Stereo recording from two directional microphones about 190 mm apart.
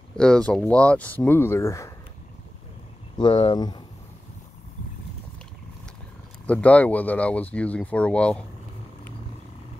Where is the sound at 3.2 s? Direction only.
25° left (ahead or behind).